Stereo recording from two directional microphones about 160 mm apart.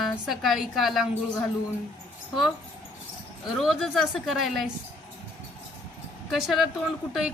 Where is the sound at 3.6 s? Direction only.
Centre (ahead or behind).